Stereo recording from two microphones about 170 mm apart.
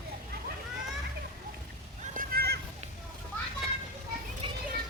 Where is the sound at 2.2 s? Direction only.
65° right (ahead or behind).